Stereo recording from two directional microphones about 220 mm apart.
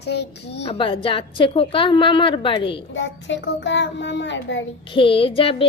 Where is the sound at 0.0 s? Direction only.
50° left (ahead or behind).